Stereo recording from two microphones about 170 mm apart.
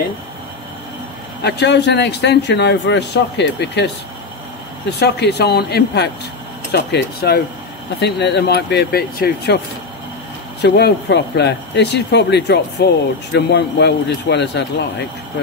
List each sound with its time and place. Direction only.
1.4 s a man's voice: 90° left
5.0 s speech: 75° left (ahead or behind)
10.6 s speech: 85° left